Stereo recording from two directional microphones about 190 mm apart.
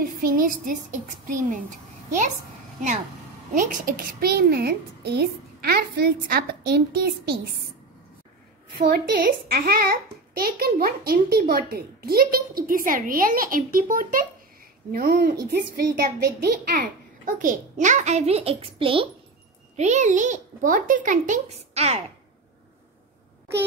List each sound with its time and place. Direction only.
0.2 s a child's voice: 50° right (ahead or behind)
3.5 s a child's voice: 45° right (ahead or behind)
8.7 s a child's voice: 50° right (ahead or behind); by 19.0 s 30° right (ahead or behind)
19.8 s a child's voice: 40° right (ahead or behind)